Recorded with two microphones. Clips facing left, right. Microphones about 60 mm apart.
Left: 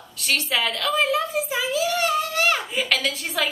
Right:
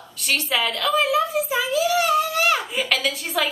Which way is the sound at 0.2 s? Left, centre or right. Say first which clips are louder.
Right 1 dB; centre.